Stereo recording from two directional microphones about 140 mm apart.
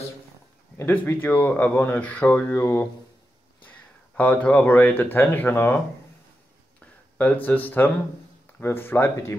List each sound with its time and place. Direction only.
0.7 s speech: 15° left (ahead or behind)
4.1 s speech: 10° left (ahead or behind)
7.2 s speech: 10° left (ahead or behind)